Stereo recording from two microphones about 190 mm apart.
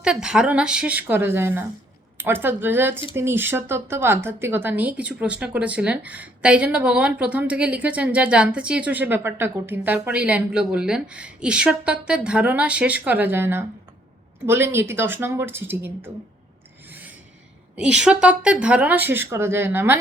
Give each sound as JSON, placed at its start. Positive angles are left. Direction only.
{"t": 0.0, "sound": "a woman's voice", "side_deg": -5}
{"t": 16.9, "sound": "filing", "side_deg": -10}
{"t": 17.7, "sound": "a woman's voice", "side_deg": -5}